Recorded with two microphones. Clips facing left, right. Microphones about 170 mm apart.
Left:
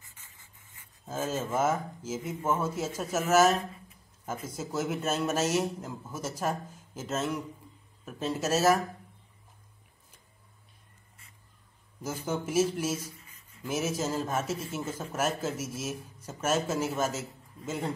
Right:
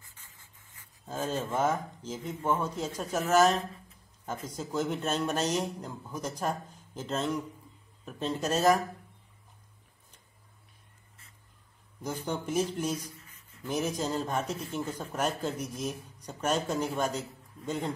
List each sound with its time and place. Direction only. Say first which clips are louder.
0.0 s rub: even; 20° left (ahead or behind)
1.0 s speech: left 1 dB; 5° left (ahead or behind)
12.0 s speech: left 1 dB; 5° left (ahead or behind)